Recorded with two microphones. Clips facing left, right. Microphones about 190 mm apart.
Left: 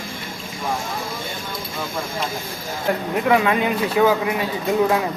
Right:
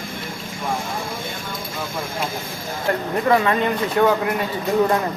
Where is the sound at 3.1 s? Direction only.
5° left (ahead or behind).